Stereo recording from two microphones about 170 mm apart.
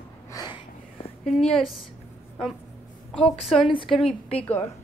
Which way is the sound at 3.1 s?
Centre (ahead or behind).